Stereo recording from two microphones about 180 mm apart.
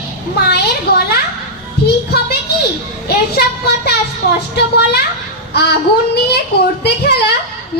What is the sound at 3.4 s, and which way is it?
A child's voice, 60° left (ahead or behind).